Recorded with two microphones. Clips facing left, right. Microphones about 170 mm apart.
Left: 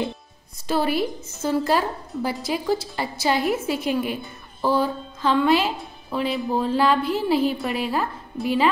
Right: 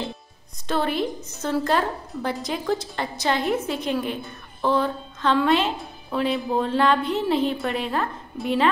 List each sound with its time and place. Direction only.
0.7 s a woman's voice: 5° left (ahead or behind)